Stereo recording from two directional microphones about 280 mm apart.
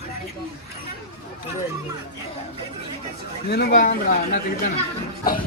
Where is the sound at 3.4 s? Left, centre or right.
Left.